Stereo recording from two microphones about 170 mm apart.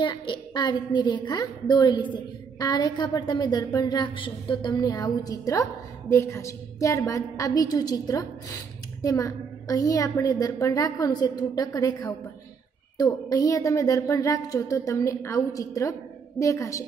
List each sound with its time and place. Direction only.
0.0 s a woman's voice: 25° left (ahead or behind)